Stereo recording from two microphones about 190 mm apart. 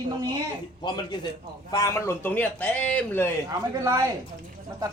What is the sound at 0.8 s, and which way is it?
A man's voice, 25° left (ahead or behind).